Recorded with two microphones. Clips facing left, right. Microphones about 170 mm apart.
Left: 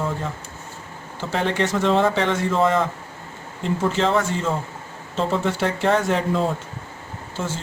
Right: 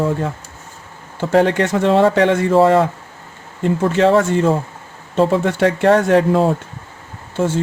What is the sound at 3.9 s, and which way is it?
Speech, 65° right (ahead or behind).